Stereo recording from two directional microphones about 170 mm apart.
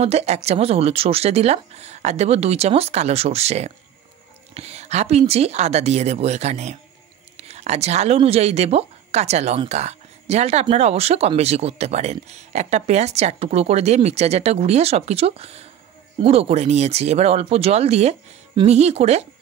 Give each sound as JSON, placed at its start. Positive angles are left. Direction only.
{"t": 0.0, "sound": "speech", "side_deg": -40}